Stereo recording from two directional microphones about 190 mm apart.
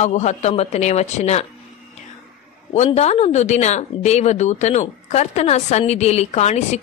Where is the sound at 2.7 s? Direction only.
35° left (ahead or behind).